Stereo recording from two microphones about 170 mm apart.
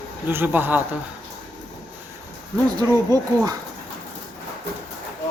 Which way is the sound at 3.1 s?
25° right (ahead or behind).